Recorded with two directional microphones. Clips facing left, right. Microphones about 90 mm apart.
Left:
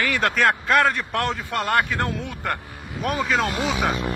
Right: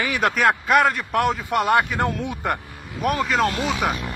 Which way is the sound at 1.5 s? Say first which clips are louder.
Right 2 dB; 15° right (ahead or behind).